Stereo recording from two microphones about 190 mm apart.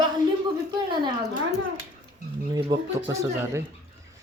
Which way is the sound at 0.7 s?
25° right (ahead or behind).